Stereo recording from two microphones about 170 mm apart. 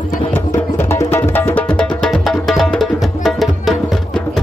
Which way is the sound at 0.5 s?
15° left (ahead or behind).